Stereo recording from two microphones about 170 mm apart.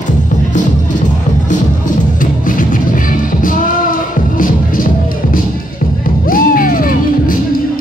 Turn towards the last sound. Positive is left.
turn(degrees=55)  # may be behind; listen again after turning